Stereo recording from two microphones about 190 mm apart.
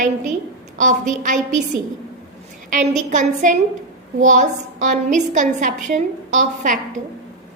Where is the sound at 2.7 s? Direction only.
40° right (ahead or behind).